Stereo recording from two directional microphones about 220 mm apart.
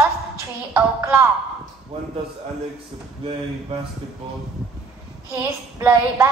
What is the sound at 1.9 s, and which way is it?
Speech, 25° right (ahead or behind).